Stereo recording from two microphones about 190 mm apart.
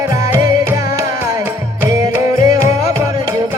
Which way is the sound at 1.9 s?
15° right (ahead or behind).